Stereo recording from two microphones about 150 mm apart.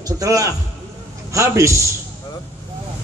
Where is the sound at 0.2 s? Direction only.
20° right (ahead or behind).